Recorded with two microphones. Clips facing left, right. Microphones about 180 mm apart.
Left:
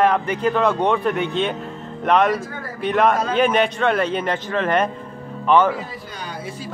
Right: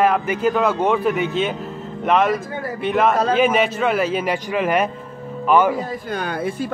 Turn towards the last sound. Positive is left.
turn(degrees=-55)  # may be behind; listen again after turning